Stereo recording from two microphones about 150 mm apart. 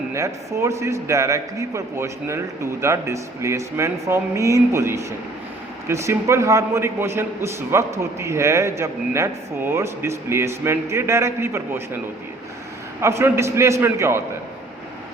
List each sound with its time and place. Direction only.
0.1 s a man's voice: 20° right (ahead or behind)
13.0 s a man's voice: 20° right (ahead or behind)